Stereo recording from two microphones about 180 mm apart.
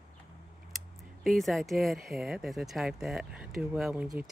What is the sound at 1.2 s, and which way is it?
Speech, centre (ahead or behind).